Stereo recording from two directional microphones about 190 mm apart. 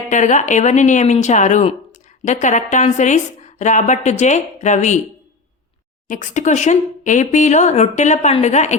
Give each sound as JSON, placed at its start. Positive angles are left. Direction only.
{"t": 0.1, "sound": "speech", "side_deg": 40}
{"t": 6.1, "sound": "speech", "side_deg": 40}